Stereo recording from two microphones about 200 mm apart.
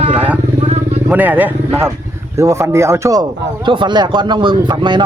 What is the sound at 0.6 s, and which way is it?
Vehicle, 30° right (ahead or behind).